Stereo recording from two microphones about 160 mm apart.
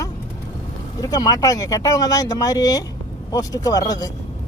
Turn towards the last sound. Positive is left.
turn(degrees=25)  # may be behind; listen again after turning